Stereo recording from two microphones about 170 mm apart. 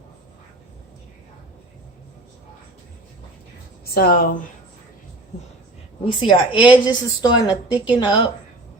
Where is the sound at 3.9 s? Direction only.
60° left (ahead or behind).